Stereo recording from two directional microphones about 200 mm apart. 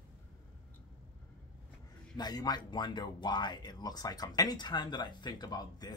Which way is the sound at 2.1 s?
20° left (ahead or behind).